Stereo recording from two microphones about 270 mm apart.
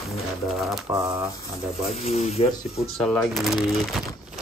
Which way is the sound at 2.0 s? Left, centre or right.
Left.